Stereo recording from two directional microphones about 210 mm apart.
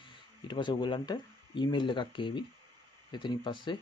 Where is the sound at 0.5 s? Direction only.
20° left (ahead or behind).